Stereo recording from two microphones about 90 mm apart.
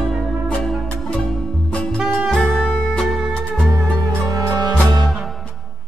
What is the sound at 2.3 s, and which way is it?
Music, 5° left (ahead or behind).